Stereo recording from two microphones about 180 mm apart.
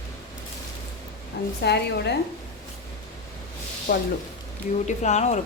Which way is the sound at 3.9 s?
55° left (ahead or behind).